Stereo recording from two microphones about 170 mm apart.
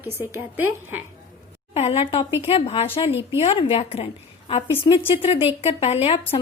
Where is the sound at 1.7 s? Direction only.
35° left (ahead or behind).